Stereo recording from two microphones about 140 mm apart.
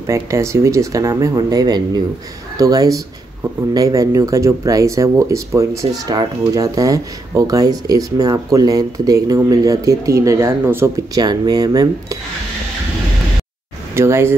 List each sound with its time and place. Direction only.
0.0 s speech: 20° right (ahead or behind)
11.2 s speech: 30° right (ahead or behind)
13.9 s speech: 20° right (ahead or behind)